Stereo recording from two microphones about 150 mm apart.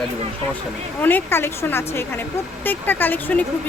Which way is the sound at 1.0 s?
10° left (ahead or behind).